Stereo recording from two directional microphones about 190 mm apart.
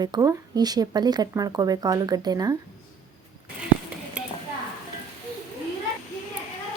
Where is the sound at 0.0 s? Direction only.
20° right (ahead or behind).